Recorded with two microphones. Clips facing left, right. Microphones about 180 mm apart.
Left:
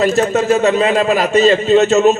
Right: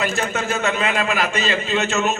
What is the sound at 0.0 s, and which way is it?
A man's voice, 40° left (ahead or behind).